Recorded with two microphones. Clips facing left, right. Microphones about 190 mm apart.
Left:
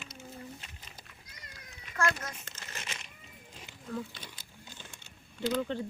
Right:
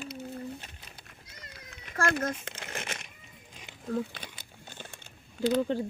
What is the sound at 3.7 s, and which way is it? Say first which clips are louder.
Wild animals: right 6 dB; 45° right (ahead or behind).